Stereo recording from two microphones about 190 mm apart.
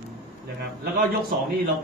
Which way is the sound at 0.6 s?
50° right (ahead or behind).